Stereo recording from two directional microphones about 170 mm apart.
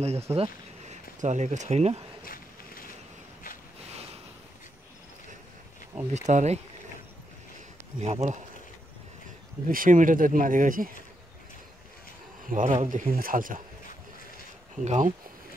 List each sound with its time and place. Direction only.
0.0 s speech: 40° right (ahead or behind)
2.2 s a sound: 55° left (ahead or behind)
6.1 s speech: 45° right (ahead or behind)
8.0 s speech: 40° right (ahead or behind)
9.7 s speech: 50° right (ahead or behind)
12.4 s speech: 50° right (ahead or behind)
14.9 s speech: 45° right (ahead or behind)